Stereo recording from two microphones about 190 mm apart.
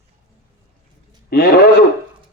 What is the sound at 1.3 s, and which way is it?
Speech, 55° left (ahead or behind).